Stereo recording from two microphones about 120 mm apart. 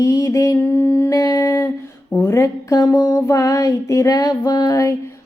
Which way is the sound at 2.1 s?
25° left (ahead or behind).